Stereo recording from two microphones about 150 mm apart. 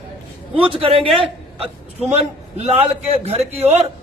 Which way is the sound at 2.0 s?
45° right (ahead or behind).